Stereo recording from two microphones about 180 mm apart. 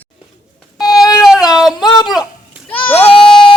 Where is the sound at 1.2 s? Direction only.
Centre (ahead or behind).